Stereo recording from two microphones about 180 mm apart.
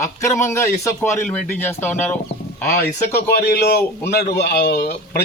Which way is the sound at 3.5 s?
60° left (ahead or behind).